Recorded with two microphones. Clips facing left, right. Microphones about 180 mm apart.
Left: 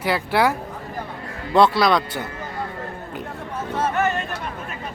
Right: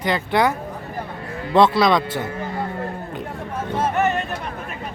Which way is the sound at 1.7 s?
Centre (ahead or behind).